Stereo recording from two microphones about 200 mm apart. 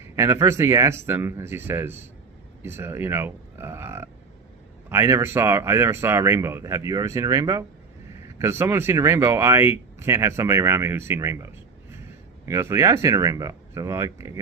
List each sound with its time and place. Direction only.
0.2 s speech: 15° right (ahead or behind)